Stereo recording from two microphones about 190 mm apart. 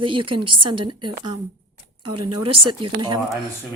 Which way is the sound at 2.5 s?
25° right (ahead or behind).